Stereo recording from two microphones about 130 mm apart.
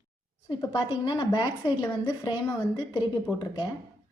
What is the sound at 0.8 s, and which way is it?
A woman's voice, 35° left (ahead or behind).